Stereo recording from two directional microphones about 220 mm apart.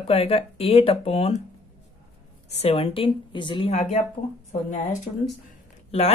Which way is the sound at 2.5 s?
25° left (ahead or behind).